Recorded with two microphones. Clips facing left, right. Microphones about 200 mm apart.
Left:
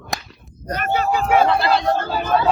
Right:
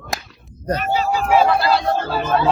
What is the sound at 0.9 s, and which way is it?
Speech, 55° left (ahead or behind).